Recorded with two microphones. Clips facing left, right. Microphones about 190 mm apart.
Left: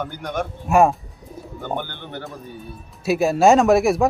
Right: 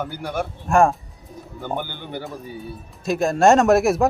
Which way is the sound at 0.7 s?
5° left (ahead or behind).